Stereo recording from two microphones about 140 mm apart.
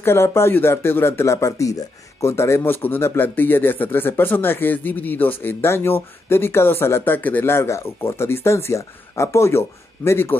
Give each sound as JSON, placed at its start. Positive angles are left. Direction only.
{"t": 0.0, "sound": "speech", "side_deg": 20}